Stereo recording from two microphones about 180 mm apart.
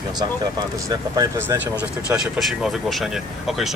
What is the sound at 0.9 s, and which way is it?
Speech, 20° right (ahead or behind).